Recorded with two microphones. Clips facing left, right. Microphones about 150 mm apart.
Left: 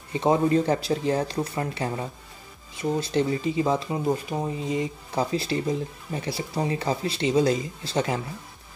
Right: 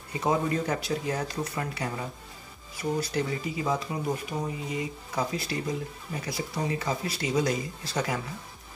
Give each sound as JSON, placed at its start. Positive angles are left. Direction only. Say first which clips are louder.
{"t": 0.1, "sound": "speech", "louder": "left 6 dB", "side_deg": 25}